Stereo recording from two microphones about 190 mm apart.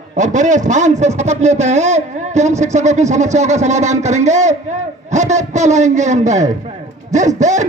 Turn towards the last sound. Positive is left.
turn(degrees=-40)  # may be behind; listen again after turning